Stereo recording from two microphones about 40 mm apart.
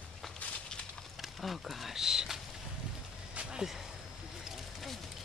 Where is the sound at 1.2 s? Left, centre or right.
Centre.